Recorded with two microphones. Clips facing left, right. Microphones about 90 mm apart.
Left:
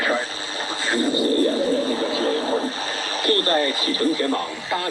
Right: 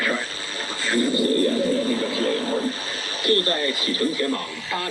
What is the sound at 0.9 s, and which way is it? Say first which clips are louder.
Bird: even; 20° left (ahead or behind).